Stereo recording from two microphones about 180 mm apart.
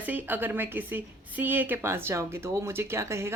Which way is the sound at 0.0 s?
10° right (ahead or behind).